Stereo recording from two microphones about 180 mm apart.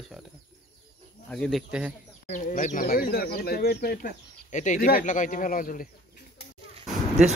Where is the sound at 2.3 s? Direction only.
50° left (ahead or behind).